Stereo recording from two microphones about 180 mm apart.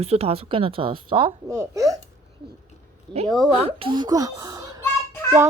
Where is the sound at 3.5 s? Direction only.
30° right (ahead or behind).